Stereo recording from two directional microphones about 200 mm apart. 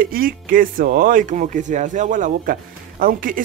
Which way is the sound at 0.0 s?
45° right (ahead or behind).